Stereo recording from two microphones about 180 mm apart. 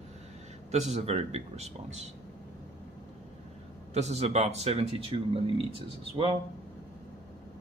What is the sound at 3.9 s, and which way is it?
Speech, 35° right (ahead or behind).